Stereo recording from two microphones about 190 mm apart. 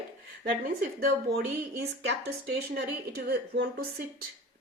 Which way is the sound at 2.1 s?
60° right (ahead or behind).